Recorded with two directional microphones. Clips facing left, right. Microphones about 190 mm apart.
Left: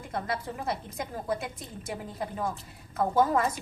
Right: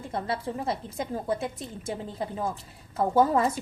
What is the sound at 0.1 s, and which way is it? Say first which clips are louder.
A woman's voice: right 2 dB; 30° right (ahead or behind).